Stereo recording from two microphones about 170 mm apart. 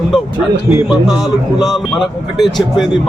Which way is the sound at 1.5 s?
25° left (ahead or behind).